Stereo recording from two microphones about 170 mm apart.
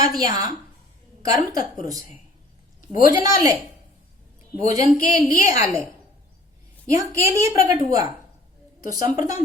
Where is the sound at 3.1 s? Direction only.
20° right (ahead or behind).